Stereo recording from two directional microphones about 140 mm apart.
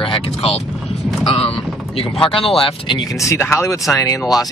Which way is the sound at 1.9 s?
40° left (ahead or behind).